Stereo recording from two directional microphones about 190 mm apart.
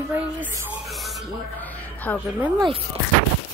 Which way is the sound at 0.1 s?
10° right (ahead or behind).